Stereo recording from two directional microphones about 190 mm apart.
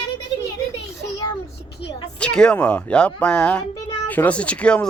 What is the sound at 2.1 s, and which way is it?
Speech, 5° left (ahead or behind).